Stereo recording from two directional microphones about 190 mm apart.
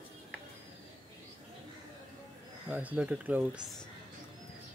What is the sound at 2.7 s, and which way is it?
Speech, 10° right (ahead or behind).